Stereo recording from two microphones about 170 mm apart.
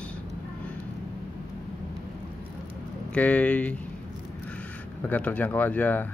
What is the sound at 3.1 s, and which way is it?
Speech, 10° left (ahead or behind).